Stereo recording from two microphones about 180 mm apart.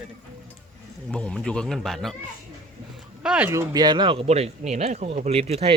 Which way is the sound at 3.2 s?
10° right (ahead or behind).